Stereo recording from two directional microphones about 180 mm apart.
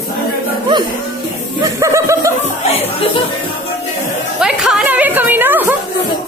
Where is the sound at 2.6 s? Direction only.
35° left (ahead or behind).